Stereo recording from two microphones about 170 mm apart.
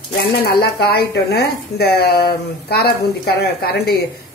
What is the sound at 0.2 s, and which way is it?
Speech, 70° left (ahead or behind).